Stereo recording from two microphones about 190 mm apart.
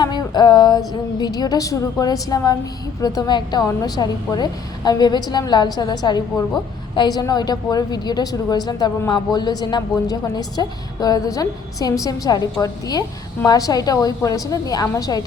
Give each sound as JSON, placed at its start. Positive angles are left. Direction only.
{"t": 0.0, "sound": "a woman's voice", "side_deg": 20}